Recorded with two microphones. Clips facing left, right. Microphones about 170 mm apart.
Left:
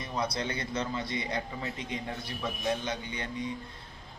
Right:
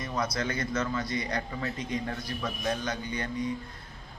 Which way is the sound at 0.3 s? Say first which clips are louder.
Right 3 dB; 25° left (ahead or behind).